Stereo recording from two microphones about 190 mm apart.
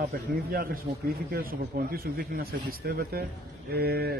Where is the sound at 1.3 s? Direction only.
50° right (ahead or behind).